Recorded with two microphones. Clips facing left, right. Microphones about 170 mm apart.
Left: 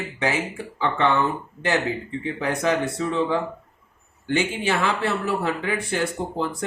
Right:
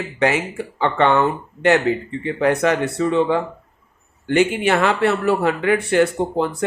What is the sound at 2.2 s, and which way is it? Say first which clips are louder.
Speech: right 6 dB; 65° right (ahead or behind).